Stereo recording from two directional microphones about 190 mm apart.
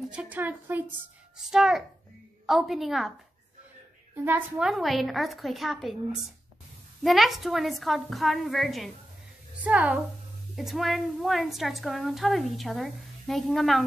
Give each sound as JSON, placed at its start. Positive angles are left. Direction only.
{"t": 0.1, "sound": "a woman's voice", "side_deg": -10}
{"t": 4.1, "sound": "a woman's voice", "side_deg": -10}
{"t": 7.0, "sound": "a woman's voice", "side_deg": 0}